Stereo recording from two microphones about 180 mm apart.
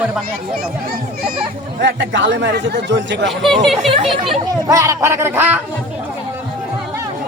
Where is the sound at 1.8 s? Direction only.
75° right (ahead or behind).